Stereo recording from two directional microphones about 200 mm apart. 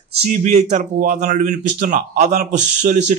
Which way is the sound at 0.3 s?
35° right (ahead or behind).